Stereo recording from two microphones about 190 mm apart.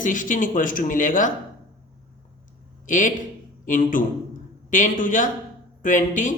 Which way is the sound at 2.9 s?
40° left (ahead or behind).